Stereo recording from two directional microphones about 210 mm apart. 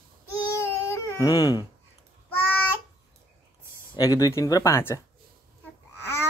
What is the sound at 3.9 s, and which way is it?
A man's voice, 15° left (ahead or behind).